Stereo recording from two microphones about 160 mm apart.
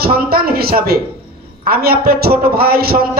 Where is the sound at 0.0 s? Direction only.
70° right (ahead or behind).